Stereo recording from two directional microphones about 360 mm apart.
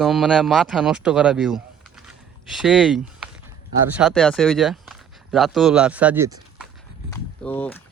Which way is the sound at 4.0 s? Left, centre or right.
Centre.